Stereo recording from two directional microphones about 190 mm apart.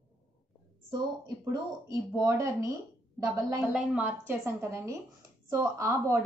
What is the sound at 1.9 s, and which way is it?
Speech, 15° right (ahead or behind).